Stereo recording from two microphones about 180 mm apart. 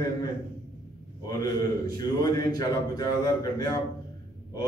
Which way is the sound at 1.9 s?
20° left (ahead or behind).